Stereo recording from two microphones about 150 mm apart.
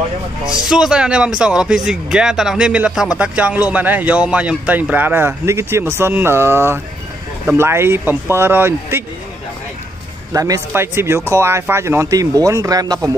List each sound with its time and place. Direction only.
0.7 s speech: 5° right (ahead or behind)
10.3 s speech: 20° right (ahead or behind)